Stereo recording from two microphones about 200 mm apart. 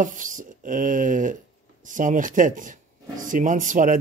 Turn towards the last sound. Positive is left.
turn(degrees=-40)  # may be behind; listen again after turning